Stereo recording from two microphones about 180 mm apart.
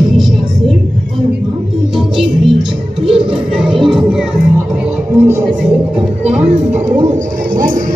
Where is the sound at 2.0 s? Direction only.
Centre (ahead or behind).